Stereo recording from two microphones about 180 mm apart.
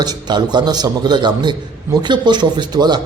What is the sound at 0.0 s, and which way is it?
A man's voice, 25° right (ahead or behind).